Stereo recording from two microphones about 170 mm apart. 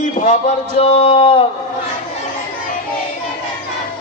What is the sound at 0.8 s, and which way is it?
Speech, 35° left (ahead or behind).